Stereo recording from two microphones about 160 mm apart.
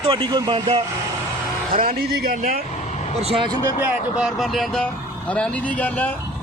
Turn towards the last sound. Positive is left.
turn(degrees=10)  # may be behind; listen again after turning